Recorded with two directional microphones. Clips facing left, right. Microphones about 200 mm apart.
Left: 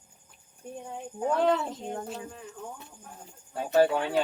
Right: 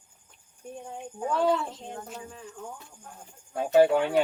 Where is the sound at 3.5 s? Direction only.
15° right (ahead or behind).